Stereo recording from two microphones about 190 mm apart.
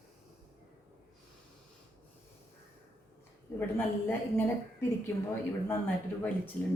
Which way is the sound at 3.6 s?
10° left (ahead or behind).